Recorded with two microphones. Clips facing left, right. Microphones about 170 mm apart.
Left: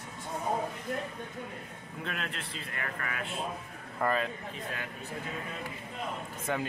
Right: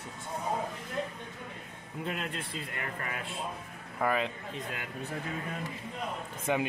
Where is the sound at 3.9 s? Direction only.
5° right (ahead or behind).